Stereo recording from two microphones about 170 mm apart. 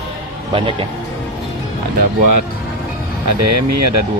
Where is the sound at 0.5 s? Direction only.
30° right (ahead or behind).